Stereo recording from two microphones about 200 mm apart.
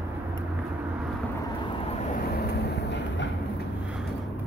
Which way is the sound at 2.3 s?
55° left (ahead or behind).